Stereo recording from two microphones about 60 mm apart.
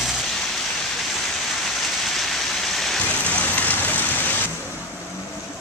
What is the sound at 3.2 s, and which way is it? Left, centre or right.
Vehicle, left.